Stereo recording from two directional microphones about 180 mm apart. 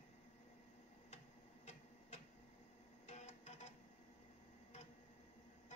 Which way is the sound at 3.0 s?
40° left (ahead or behind).